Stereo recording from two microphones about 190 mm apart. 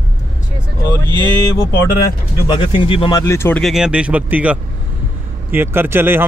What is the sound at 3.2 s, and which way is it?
Speech, 15° left (ahead or behind).